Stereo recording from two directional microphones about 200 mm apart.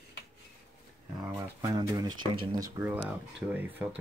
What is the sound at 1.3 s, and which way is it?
Speech, 20° right (ahead or behind).